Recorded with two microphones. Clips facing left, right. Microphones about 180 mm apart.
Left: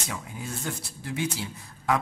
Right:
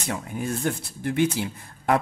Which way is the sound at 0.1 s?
55° right (ahead or behind).